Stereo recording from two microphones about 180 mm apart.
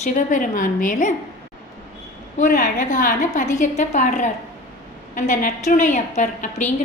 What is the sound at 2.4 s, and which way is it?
A woman's voice, 45° left (ahead or behind).